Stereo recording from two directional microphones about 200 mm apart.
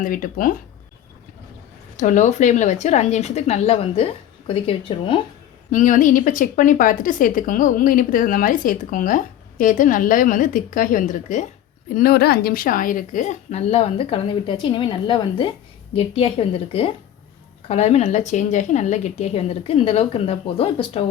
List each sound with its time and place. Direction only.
0.0 s a woman's voice: 45° left (ahead or behind)
2.0 s speech: 40° left (ahead or behind)
5.7 s a woman's voice: 40° left (ahead or behind)
11.9 s a woman's voice: 50° left (ahead or behind); by 21.1 s 25° left (ahead or behind)